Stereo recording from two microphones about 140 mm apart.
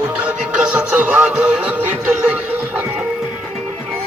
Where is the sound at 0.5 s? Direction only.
10° right (ahead or behind).